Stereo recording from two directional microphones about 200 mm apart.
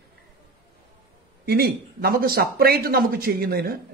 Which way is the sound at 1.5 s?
50° right (ahead or behind).